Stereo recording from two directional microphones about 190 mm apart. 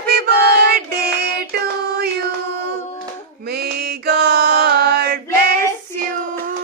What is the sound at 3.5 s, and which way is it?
Mantra, 55° right (ahead or behind).